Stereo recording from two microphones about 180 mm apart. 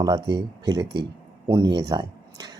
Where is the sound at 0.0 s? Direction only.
25° right (ahead or behind).